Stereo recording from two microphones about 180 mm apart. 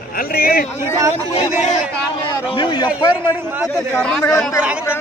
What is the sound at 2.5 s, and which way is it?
Speech, 25° left (ahead or behind).